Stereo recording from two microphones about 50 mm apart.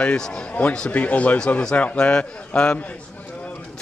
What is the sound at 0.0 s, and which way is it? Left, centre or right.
A man's voice, centre.